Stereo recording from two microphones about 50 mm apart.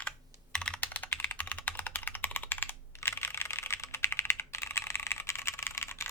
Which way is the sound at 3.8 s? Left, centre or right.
Left.